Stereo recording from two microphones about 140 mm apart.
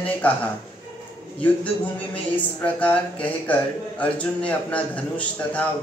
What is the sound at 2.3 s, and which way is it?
A man's voice, 10° left (ahead or behind).